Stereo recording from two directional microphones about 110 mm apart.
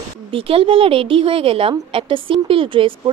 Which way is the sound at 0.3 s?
55° right (ahead or behind).